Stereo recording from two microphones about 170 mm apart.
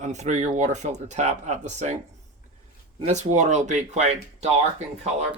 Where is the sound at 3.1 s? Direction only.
45° right (ahead or behind).